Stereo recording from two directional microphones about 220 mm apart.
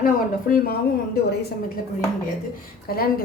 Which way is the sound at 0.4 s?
40° left (ahead or behind).